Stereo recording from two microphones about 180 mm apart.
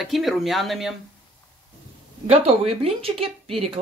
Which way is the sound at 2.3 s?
35° right (ahead or behind).